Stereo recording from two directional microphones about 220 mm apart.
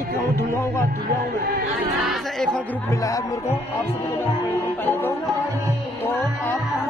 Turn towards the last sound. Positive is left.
turn(degrees=10)  # may be behind; listen again after turning